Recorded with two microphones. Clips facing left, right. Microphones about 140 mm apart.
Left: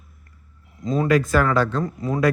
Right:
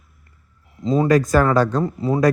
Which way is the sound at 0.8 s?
25° right (ahead or behind).